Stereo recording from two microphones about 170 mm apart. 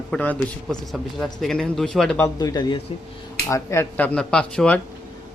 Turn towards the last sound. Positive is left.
turn(degrees=5)  # may be behind; listen again after turning